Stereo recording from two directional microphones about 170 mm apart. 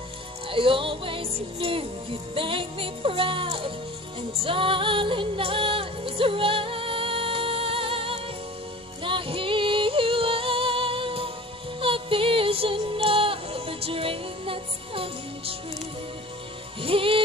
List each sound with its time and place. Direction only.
0.5 s music: 30° right (ahead or behind)
16.8 s music: 30° right (ahead or behind)